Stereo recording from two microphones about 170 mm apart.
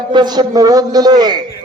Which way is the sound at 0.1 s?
25° right (ahead or behind).